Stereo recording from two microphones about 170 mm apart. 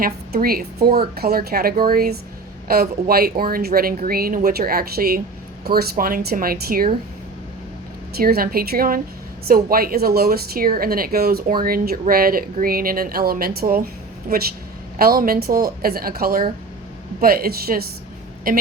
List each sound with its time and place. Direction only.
0.0 s speech: 60° right (ahead or behind)
8.2 s speech: 60° right (ahead or behind)